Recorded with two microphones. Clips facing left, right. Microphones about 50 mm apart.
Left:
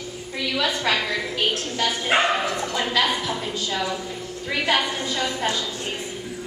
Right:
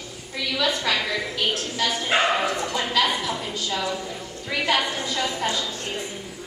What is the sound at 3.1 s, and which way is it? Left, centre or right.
Speech, centre.